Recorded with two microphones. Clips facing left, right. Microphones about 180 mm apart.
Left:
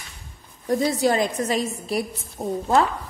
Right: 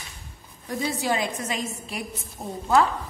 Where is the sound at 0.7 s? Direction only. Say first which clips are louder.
Left 6 dB; 40° left (ahead or behind).